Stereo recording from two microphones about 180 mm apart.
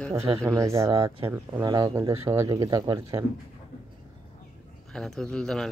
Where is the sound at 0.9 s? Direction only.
30° right (ahead or behind).